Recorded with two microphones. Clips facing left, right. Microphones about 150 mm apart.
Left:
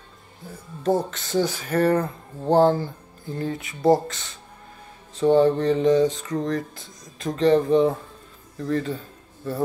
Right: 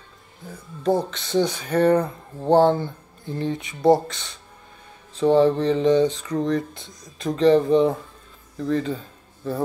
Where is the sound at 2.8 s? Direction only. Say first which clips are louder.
Right 1 dB; 25° right (ahead or behind).